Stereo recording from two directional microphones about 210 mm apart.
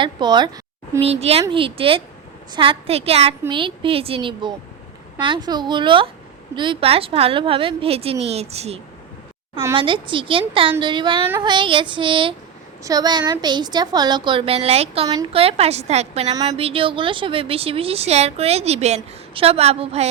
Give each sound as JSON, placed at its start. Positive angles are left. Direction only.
{"t": 0.0, "sound": "a woman's voice", "side_deg": -20}